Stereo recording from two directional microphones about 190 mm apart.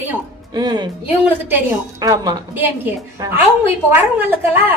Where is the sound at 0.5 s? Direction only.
20° right (ahead or behind).